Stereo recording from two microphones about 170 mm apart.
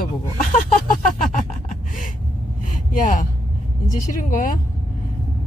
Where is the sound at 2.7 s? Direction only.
50° left (ahead or behind).